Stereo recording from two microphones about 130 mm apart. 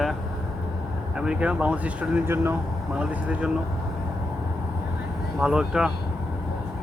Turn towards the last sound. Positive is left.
turn(degrees=-5)  # may be behind; listen again after turning